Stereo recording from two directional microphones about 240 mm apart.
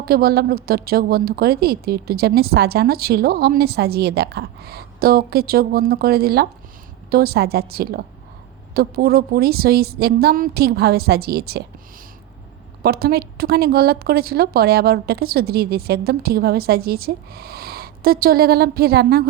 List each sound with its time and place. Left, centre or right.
0.0 s a woman's voice: right
12.8 s a woman's voice: right